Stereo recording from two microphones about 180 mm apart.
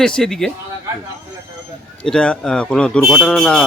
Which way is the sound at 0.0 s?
5° left (ahead or behind).